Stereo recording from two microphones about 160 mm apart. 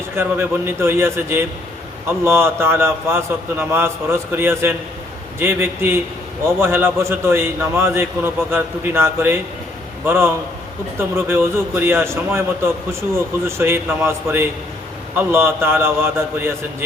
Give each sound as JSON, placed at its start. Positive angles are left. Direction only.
{"t": 0.2, "sound": "a man's voice", "side_deg": -15}